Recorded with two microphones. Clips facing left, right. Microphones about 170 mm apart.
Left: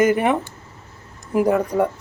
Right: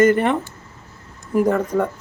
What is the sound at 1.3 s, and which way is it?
Speech, 10° left (ahead or behind).